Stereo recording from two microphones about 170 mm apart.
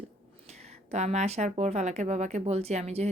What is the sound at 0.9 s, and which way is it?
Speech, 40° right (ahead or behind).